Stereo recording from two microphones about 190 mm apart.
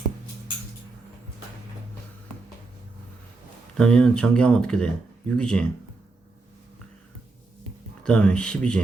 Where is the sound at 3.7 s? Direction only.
5° left (ahead or behind).